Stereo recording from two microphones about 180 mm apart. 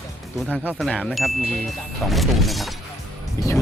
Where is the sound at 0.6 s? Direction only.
10° right (ahead or behind).